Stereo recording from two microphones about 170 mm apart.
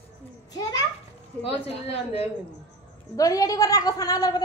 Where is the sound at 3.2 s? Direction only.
20° left (ahead or behind).